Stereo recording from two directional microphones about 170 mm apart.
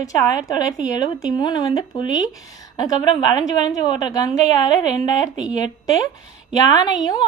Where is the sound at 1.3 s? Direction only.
25° left (ahead or behind).